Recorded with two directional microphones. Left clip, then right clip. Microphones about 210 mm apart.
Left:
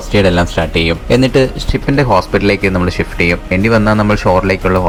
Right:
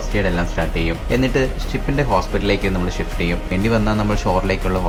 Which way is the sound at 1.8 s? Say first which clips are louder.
Left 7 dB; 30° left (ahead or behind).